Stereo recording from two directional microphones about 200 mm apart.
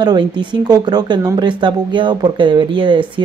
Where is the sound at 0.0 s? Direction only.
20° right (ahead or behind).